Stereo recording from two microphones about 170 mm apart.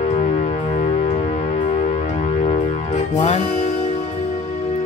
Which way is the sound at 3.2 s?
40° left (ahead or behind).